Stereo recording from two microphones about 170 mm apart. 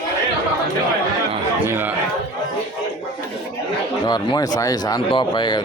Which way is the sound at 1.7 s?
10° right (ahead or behind).